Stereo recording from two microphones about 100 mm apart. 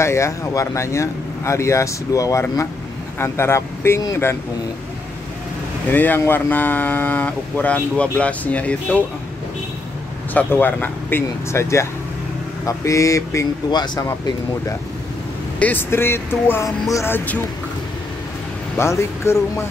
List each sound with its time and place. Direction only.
0.0 s speech: 30° left (ahead or behind)
5.9 s speech: 20° left (ahead or behind)
10.3 s speech: 20° left (ahead or behind); by 14.3 s 35° left (ahead or behind)
15.6 s speech: 20° left (ahead or behind)
18.8 s speech: 25° left (ahead or behind)